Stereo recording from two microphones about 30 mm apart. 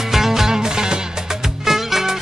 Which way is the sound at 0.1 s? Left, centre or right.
Centre.